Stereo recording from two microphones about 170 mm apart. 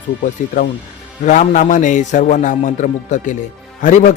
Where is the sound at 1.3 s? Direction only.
50° left (ahead or behind).